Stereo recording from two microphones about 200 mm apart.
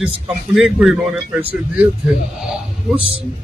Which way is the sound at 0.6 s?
Centre (ahead or behind).